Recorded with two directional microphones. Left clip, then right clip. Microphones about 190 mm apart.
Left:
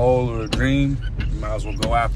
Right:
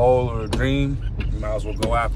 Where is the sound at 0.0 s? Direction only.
10° right (ahead or behind).